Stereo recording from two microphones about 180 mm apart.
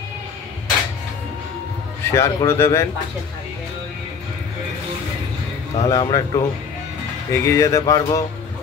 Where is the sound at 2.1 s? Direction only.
15° left (ahead or behind).